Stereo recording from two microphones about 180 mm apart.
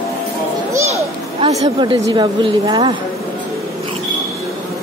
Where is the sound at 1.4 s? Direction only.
20° right (ahead or behind).